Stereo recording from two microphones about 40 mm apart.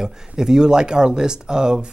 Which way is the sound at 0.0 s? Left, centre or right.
Centre.